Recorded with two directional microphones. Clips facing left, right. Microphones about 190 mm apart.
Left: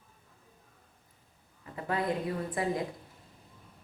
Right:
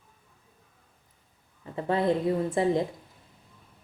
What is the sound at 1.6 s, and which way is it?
Speech, 30° right (ahead or behind).